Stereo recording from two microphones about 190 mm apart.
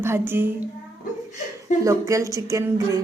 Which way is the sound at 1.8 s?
15° right (ahead or behind).